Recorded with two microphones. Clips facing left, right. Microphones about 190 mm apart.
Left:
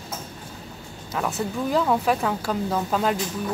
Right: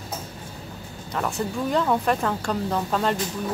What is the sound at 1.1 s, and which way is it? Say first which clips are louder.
Speech: even; centre (ahead or behind).